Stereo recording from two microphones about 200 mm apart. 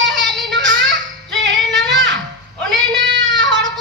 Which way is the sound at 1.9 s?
65° right (ahead or behind).